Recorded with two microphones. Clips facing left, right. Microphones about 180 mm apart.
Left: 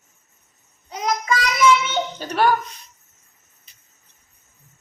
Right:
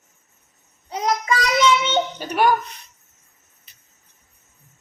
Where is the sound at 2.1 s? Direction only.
10° right (ahead or behind).